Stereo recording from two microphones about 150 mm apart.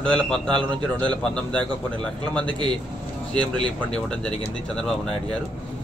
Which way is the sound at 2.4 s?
30° right (ahead or behind).